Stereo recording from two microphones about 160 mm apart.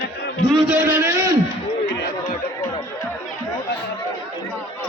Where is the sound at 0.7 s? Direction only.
15° right (ahead or behind).